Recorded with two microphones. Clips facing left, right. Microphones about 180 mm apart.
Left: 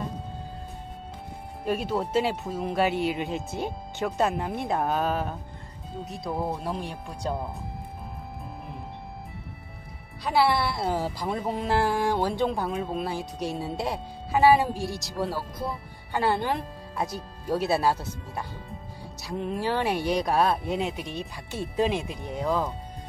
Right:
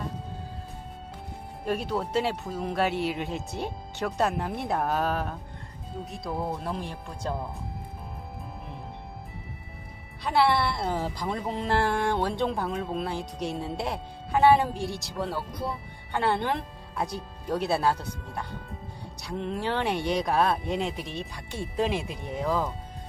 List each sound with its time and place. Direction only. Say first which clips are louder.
1.6 s speech: left 2 dB; centre (ahead or behind)
10.2 s speech: even; 5° left (ahead or behind)